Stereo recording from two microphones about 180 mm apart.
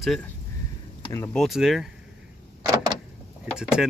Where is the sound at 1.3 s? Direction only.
Centre (ahead or behind).